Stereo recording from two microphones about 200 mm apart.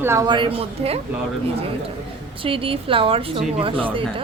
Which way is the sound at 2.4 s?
25° right (ahead or behind).